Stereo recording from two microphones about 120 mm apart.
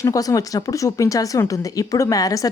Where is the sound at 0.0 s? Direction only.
30° left (ahead or behind).